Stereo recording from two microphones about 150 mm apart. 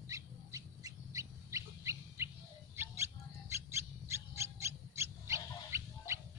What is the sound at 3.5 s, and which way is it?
Owl, 20° right (ahead or behind).